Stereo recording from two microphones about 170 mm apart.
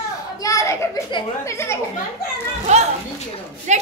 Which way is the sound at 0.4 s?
20° left (ahead or behind).